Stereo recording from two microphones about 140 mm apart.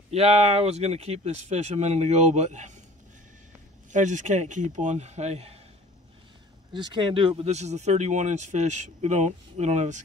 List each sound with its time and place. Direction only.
0.1 s speech: 45° right (ahead or behind)
3.9 s speech: 65° right (ahead or behind)
6.7 s speech: 30° right (ahead or behind); by 10.0 s 60° right (ahead or behind)